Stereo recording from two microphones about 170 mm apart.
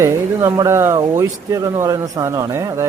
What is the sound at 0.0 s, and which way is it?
Speech, 20° right (ahead or behind).